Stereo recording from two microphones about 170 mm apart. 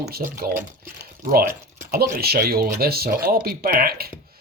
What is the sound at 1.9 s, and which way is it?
Speech, 65° right (ahead or behind).